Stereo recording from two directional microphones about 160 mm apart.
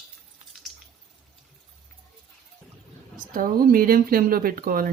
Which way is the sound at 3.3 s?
60° right (ahead or behind).